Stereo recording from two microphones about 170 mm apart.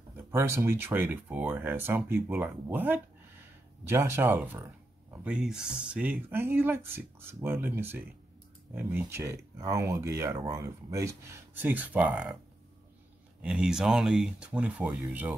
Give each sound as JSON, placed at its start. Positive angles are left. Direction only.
{"t": 0.3, "sound": "speech", "side_deg": -15}
{"t": 13.4, "sound": "speech", "side_deg": -5}